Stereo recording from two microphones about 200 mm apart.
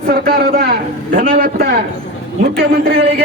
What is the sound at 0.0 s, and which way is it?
A man's voice, 45° right (ahead or behind).